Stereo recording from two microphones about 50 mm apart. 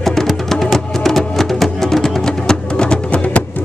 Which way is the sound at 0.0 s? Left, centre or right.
Centre.